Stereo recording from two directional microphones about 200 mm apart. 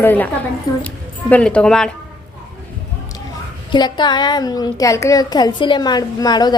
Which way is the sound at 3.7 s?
20° left (ahead or behind).